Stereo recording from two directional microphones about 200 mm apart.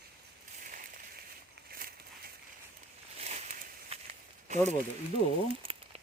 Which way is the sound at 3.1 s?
35° right (ahead or behind).